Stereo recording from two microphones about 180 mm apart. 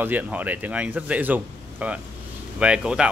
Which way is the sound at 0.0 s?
10° right (ahead or behind).